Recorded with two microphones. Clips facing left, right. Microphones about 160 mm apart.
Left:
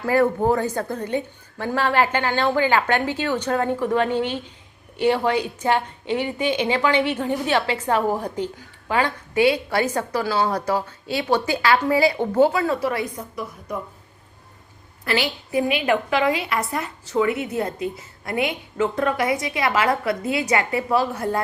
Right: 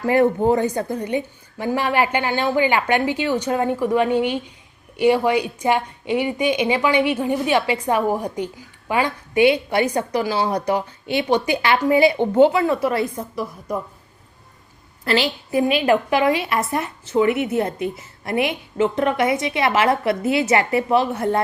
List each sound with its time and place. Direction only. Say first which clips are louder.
0.0 s a woman's voice: right 2 dB; 20° right (ahead or behind)
15.0 s a woman's voice: right 3 dB; 30° right (ahead or behind)